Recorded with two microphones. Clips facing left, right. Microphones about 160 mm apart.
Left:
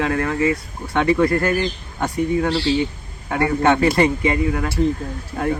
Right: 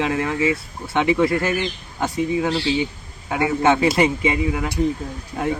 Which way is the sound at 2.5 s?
35° left (ahead or behind).